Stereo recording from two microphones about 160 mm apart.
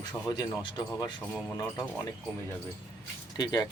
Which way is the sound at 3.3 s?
25° left (ahead or behind).